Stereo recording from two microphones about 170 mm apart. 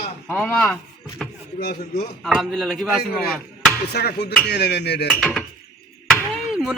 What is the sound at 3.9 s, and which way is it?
Speech, 75° left (ahead or behind).